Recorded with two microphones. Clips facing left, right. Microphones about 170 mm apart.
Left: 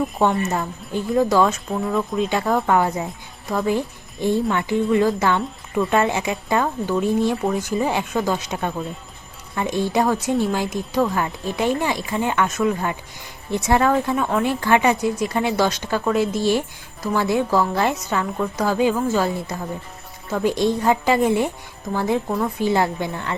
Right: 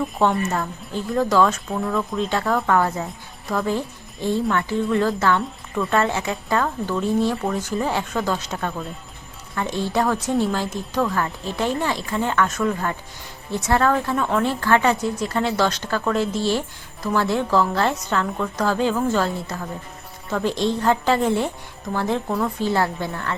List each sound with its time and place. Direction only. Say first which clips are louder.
0.2 s a woman's voice: even; 15° left (ahead or behind)